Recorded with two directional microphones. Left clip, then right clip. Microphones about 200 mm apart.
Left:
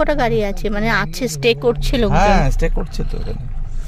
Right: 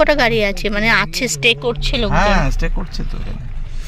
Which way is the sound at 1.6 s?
40° left (ahead or behind).